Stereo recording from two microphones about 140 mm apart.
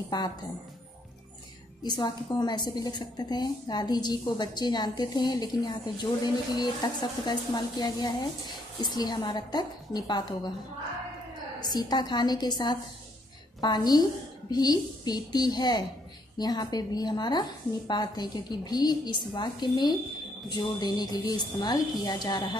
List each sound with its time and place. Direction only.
0.1 s a woman's voice: 30° left (ahead or behind)
1.8 s a woman's voice: 30° left (ahead or behind)
11.6 s a woman's voice: 30° left (ahead or behind)